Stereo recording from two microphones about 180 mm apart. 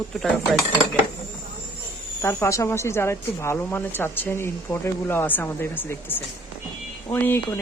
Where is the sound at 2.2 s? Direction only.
15° left (ahead or behind).